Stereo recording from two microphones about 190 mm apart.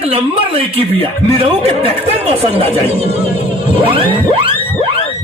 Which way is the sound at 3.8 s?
30° right (ahead or behind).